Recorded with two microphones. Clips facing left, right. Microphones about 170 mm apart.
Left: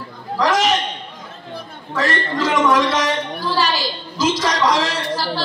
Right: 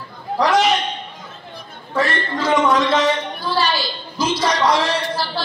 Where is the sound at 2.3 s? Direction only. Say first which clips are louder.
Even; 90° left.